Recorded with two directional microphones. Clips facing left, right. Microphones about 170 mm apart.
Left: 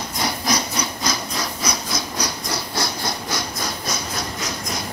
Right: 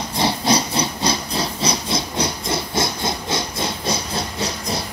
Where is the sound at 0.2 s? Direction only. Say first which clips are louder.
Right 5 dB; 30° right (ahead or behind).